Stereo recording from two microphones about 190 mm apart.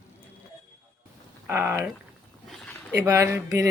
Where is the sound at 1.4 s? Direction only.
10° right (ahead or behind).